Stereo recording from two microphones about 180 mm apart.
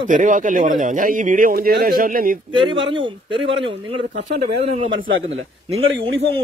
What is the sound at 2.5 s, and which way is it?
Speech, 30° right (ahead or behind).